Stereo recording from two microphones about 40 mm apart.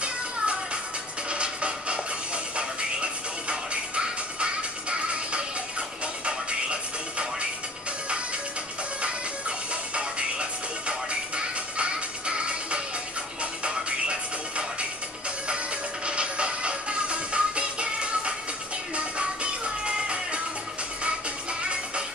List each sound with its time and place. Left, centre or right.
1.3 s music: right
9.9 s music: right
16.1 s music: right